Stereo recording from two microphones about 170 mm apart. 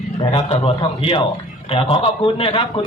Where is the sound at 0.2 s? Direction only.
30° left (ahead or behind).